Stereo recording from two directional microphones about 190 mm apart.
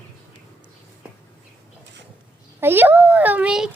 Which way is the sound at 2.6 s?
10° right (ahead or behind).